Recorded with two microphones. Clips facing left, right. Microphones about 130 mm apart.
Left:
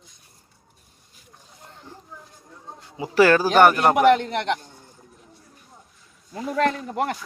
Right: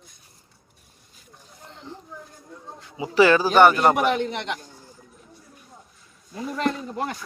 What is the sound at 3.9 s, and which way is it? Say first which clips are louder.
Speech: left 5 dB; 65° left (ahead or behind).